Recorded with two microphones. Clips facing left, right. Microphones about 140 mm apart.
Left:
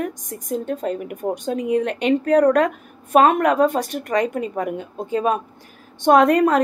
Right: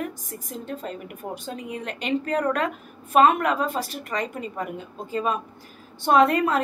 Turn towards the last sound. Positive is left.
turn(degrees=50)  # may be behind; listen again after turning